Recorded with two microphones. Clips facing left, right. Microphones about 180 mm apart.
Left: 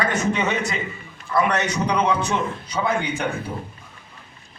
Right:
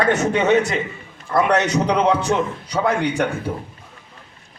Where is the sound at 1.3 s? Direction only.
60° right (ahead or behind).